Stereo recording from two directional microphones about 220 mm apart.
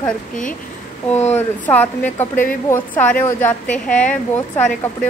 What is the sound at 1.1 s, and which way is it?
Speech, 30° left (ahead or behind).